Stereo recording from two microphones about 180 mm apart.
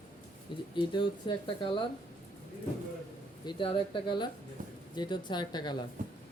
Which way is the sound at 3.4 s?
30° left (ahead or behind).